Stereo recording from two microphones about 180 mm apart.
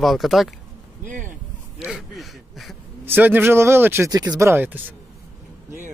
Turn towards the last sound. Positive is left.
turn(degrees=-10)  # may be behind; listen again after turning